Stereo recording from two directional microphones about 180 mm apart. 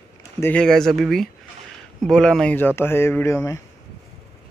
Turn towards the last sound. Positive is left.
turn(degrees=15)  # may be behind; listen again after turning